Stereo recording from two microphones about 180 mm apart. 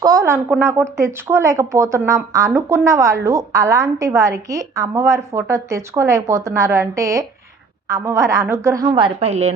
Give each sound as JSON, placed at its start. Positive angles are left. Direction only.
{"t": 0.0, "sound": "a woman's voice", "side_deg": -20}